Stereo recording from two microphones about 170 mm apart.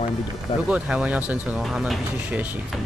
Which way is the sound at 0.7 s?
5° right (ahead or behind).